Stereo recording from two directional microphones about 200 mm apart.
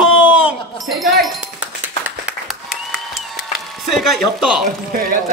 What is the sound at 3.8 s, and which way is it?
Speech, centre (ahead or behind).